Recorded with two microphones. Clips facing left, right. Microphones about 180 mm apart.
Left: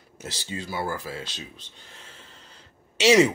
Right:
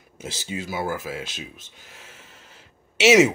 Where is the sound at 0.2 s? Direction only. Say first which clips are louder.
Right 3 dB; 10° right (ahead or behind).